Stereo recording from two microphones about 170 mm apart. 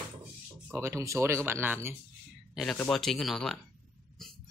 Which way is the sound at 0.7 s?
15° right (ahead or behind).